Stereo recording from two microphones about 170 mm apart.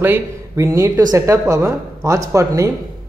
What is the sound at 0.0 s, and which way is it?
Speech, 15° right (ahead or behind).